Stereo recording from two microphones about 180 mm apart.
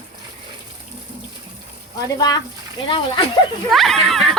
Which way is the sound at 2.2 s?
20° left (ahead or behind).